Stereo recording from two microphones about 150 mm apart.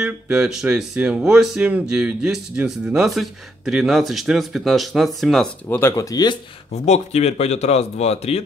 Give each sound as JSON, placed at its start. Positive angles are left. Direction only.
{"t": 0.0, "sound": "speech", "side_deg": -5}
{"t": 5.7, "sound": "speech", "side_deg": 15}
{"t": 6.7, "sound": "speech", "side_deg": 45}